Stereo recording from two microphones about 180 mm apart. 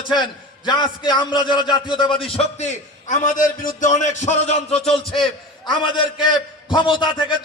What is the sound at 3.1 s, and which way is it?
A man's voice, 45° left (ahead or behind).